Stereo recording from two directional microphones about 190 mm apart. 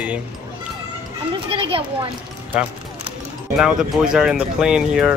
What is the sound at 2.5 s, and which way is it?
Speech, 5° right (ahead or behind).